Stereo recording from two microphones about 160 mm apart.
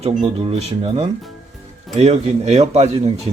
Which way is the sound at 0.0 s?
40° right (ahead or behind).